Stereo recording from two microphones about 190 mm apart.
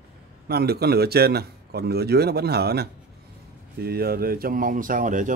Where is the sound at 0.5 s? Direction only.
55° right (ahead or behind).